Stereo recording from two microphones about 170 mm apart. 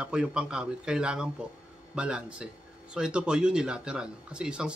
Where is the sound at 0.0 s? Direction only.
5° right (ahead or behind).